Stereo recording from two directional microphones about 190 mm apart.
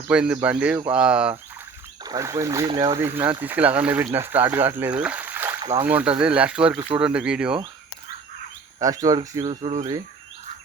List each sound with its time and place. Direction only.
0.1 s speech: 5° right (ahead or behind)
2.0 s speech: 20° right (ahead or behind)
3.2 s speech: 10° right (ahead or behind)
5.5 s a sound: 25° right (ahead or behind)
5.8 s speech: 10° right (ahead or behind)
8.8 s speech: 20° right (ahead or behind)
9.6 s speech: 35° right (ahead or behind)